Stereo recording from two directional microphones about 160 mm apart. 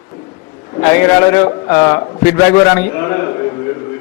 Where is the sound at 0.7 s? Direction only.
20° left (ahead or behind).